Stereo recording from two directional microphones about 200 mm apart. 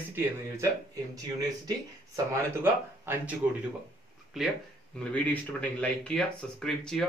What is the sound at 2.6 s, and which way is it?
Speech, 10° right (ahead or behind).